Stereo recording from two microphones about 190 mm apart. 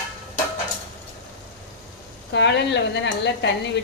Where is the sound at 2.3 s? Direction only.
65° left (ahead or behind).